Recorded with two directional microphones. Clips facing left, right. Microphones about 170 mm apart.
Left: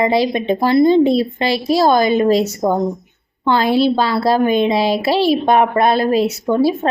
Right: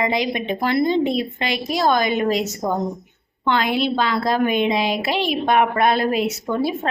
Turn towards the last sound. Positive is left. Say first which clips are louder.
# left 7 dB
turn(degrees=35)  # may be behind; listen again after turning